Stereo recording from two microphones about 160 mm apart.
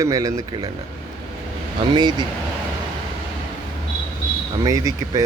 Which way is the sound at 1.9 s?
30° right (ahead or behind).